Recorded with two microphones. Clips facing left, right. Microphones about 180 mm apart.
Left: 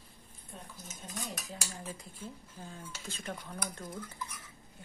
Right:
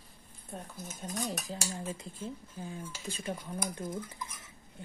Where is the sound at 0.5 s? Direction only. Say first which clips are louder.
Right 6 dB; 45° right (ahead or behind).